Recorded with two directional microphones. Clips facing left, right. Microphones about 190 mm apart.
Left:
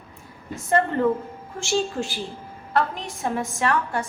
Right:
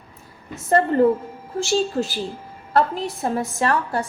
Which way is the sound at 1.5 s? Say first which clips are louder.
Right 4 dB; 40° right (ahead or behind).